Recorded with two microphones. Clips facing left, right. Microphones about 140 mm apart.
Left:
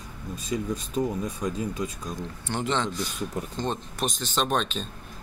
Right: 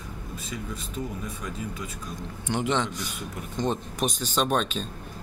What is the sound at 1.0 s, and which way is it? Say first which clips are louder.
Speech: left 8 dB; 40° left (ahead or behind).